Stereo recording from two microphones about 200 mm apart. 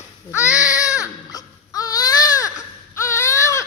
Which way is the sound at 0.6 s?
15° left (ahead or behind).